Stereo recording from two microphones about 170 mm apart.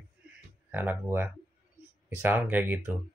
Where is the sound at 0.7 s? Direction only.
10° right (ahead or behind).